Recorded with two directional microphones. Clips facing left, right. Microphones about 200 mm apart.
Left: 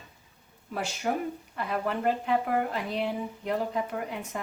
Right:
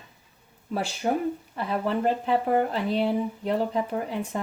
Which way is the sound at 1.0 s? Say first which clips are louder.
Right 4 dB; 30° right (ahead or behind).